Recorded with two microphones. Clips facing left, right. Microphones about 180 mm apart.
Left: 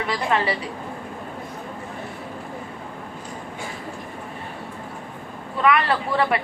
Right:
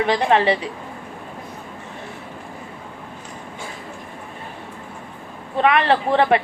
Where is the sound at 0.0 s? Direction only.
30° right (ahead or behind).